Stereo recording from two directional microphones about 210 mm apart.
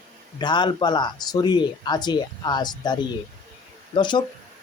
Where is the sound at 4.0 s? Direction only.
20° left (ahead or behind).